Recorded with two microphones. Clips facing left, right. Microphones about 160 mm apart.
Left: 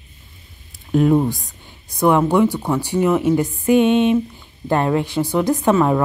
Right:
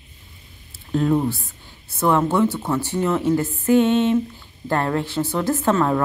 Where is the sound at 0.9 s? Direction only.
15° left (ahead or behind).